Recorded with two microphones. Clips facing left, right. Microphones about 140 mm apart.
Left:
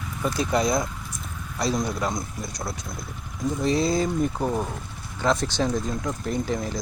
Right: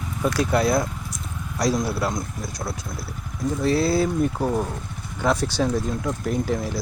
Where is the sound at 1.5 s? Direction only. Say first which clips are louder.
Right 3 dB; 10° right (ahead or behind).